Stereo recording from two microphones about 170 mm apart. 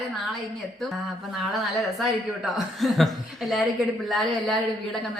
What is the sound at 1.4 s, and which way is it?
Speech, centre (ahead or behind).